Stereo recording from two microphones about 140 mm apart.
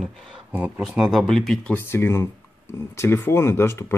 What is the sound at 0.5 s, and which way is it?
Speech, 10° right (ahead or behind).